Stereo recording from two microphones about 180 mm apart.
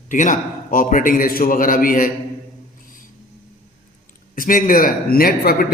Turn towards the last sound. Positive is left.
turn(degrees=55)  # may be behind; listen again after turning